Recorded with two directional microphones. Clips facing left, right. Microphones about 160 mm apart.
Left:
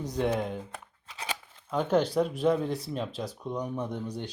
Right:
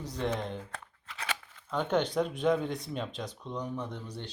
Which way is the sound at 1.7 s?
5° left (ahead or behind).